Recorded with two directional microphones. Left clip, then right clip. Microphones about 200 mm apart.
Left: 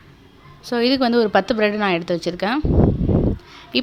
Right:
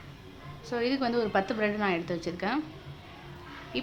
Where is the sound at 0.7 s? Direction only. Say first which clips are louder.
Left 11 dB; 40° left (ahead or behind).